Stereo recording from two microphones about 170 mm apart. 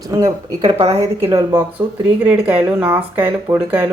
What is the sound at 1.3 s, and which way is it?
Speech, 20° right (ahead or behind).